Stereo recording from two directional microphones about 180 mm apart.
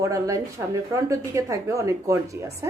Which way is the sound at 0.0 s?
15° right (ahead or behind).